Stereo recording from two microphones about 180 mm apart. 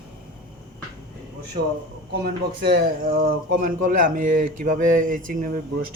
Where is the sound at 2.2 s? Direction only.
60° right (ahead or behind).